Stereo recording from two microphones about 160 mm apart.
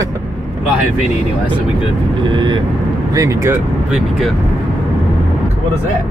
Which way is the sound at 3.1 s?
20° right (ahead or behind).